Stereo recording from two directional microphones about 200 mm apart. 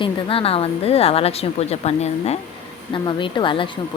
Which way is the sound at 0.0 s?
25° left (ahead or behind).